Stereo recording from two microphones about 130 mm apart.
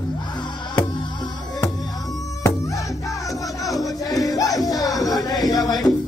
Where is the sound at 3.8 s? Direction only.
25° left (ahead or behind).